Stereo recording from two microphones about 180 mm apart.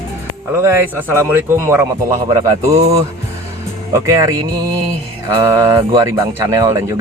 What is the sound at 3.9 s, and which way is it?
Speech, 15° right (ahead or behind).